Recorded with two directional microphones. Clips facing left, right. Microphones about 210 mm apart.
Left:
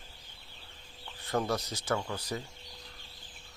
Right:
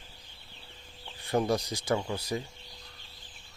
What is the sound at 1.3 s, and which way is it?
Speech, 15° right (ahead or behind).